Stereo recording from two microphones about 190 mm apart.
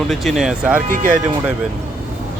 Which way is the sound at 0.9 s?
45° right (ahead or behind).